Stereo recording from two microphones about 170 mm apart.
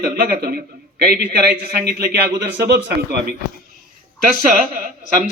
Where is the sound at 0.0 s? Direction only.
65° right (ahead or behind).